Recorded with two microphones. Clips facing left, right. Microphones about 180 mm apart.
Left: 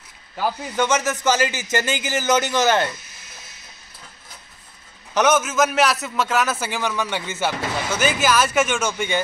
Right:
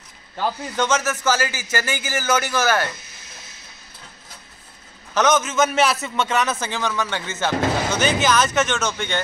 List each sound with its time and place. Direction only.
0.4 s a man's voice: 10° left (ahead or behind)
5.1 s a man's voice: 10° left (ahead or behind)